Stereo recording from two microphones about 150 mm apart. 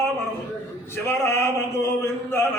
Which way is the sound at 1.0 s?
15° left (ahead or behind).